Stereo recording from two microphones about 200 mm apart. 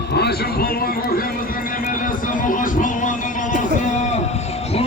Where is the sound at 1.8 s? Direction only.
45° left (ahead or behind).